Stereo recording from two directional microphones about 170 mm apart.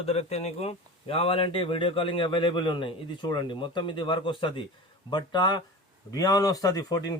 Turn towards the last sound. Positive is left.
turn(degrees=20)  # may be behind; listen again after turning